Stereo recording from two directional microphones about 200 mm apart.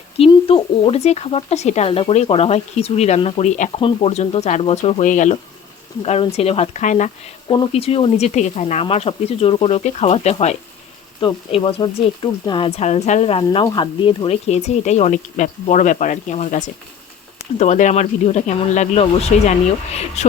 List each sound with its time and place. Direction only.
0.2 s speech: 25° left (ahead or behind)
11.2 s speech: 25° left (ahead or behind)